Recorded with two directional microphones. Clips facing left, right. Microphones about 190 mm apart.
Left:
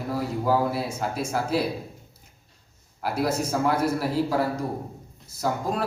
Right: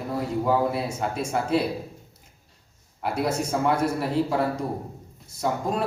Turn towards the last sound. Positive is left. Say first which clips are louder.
# right 1 dB
turn(degrees=5)  # may be behind; listen again after turning